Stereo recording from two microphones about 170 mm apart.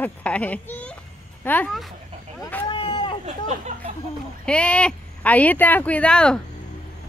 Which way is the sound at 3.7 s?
45° right (ahead or behind).